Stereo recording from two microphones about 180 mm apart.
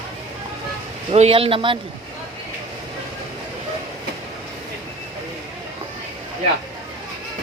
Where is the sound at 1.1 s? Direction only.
35° right (ahead or behind).